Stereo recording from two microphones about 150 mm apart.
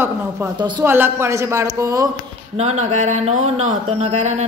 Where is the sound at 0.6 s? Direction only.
30° right (ahead or behind).